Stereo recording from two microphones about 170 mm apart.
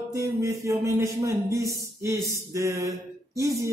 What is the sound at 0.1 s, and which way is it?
Speech, 20° right (ahead or behind).